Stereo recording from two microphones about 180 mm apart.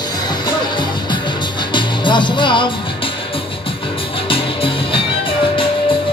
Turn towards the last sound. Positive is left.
turn(degrees=30)  # may be behind; listen again after turning